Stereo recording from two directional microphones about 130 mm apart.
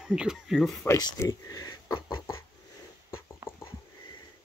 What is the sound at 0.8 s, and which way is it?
Speech, 25° left (ahead or behind).